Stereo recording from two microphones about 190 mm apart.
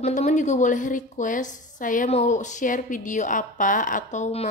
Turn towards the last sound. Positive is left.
turn(degrees=35)  # may be behind; listen again after turning